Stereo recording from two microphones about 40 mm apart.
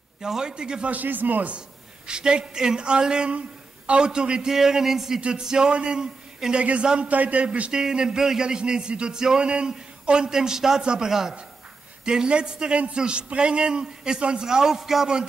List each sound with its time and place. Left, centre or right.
0.2 s speech: centre
0.8 s speech: right
2.0 s a man's voice: right
7.1 s a man's voice: right
7.7 s speech: centre